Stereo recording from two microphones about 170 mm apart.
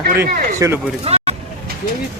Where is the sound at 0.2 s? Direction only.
15° right (ahead or behind).